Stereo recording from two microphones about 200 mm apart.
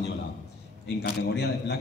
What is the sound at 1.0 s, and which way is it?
Speech, 60° left (ahead or behind).